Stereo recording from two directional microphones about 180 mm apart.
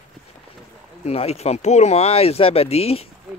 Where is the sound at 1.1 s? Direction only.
35° left (ahead or behind).